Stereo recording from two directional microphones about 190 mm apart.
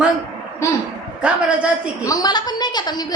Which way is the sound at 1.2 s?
5° right (ahead or behind).